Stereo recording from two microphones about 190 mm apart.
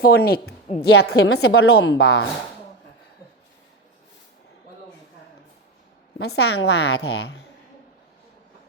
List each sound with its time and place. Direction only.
0.0 s a woman's voice: 55° left (ahead or behind)
6.1 s a woman's voice: 60° left (ahead or behind)